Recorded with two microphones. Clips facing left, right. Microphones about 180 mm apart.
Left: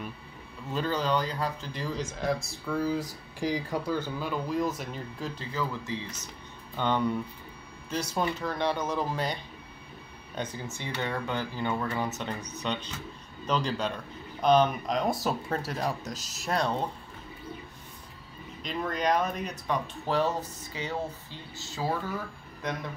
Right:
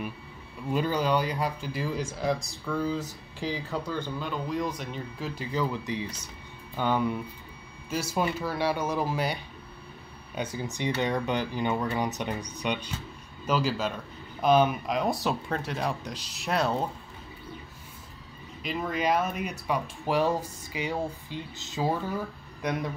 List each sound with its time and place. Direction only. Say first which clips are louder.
0.7 s speech: right 3 dB; 10° right (ahead or behind)
5.3 s speech: right 6 dB; 15° right (ahead or behind); by 15.9 s centre (ahead or behind)
16.0 s speech: even; 45° left (ahead or behind)
16.3 s speech: right 2 dB; centre (ahead or behind)
18.6 s speech: right 1 dB; 5° right (ahead or behind)